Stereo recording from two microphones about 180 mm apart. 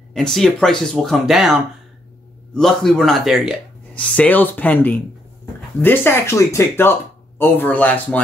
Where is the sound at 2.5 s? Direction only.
Centre (ahead or behind).